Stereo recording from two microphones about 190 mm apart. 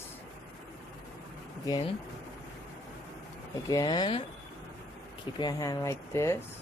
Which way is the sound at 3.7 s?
20° left (ahead or behind).